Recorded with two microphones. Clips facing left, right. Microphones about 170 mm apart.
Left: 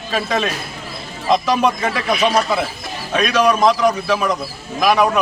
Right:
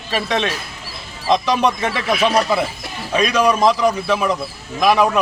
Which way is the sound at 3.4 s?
10° right (ahead or behind).